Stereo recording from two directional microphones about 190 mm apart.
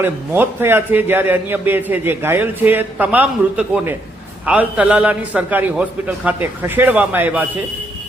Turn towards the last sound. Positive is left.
turn(degrees=-10)  # may be behind; listen again after turning